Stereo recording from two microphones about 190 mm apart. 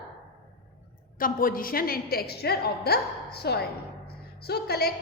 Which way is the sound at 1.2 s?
50° left (ahead or behind).